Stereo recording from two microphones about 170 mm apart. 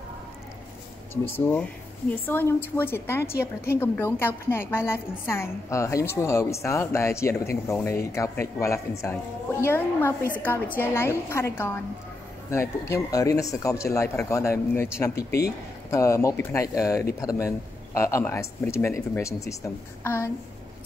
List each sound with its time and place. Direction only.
1.1 s a woman's voice: 15° left (ahead or behind)
15.1 s speech: 70° left (ahead or behind)
15.9 s a woman's voice: 15° left (ahead or behind)